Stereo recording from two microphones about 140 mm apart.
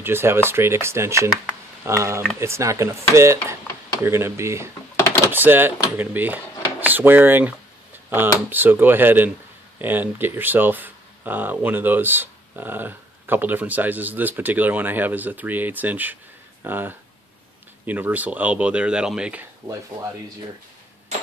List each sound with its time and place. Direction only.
0.0 s speech: 15° right (ahead or behind)